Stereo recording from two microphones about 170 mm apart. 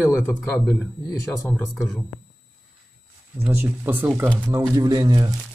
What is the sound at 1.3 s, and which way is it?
Speech, 20° left (ahead or behind).